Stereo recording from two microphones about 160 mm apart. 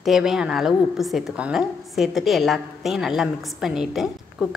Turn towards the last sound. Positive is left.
turn(degrees=0)  # may be behind; listen again after turning